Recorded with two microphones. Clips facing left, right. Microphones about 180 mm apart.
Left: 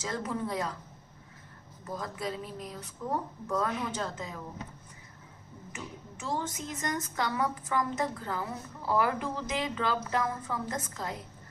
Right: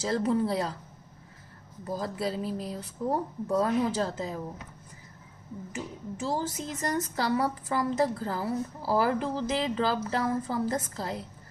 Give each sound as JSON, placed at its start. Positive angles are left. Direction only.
{"t": 0.0, "sound": "a woman's voice", "side_deg": -35}
{"t": 1.9, "sound": "a woman's voice", "side_deg": -30}
{"t": 5.7, "sound": "a woman's voice", "side_deg": -35}